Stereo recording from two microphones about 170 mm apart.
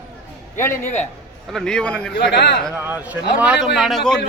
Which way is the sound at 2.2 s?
80° left.